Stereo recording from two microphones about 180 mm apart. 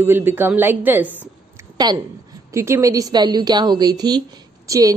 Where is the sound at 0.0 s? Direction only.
10° right (ahead or behind).